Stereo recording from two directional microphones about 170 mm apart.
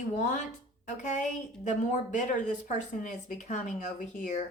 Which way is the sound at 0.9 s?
45° left (ahead or behind).